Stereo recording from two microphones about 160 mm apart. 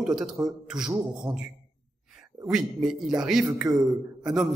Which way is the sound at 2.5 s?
Centre (ahead or behind).